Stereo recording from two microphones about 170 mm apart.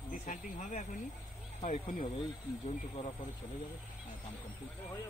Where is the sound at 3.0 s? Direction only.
35° left (ahead or behind).